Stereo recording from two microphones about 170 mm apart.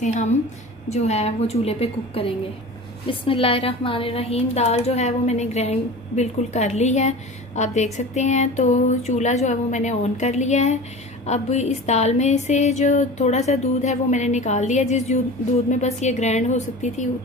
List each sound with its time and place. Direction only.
0.0 s a woman's voice: 45° left (ahead or behind)